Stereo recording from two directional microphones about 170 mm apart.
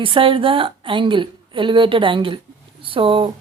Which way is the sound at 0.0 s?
30° right (ahead or behind).